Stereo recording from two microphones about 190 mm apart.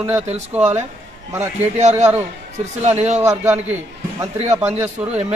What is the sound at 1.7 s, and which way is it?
A man's voice, 35° right (ahead or behind).